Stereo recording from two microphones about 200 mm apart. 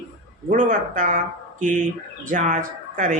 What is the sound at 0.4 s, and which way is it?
Speech, 40° right (ahead or behind).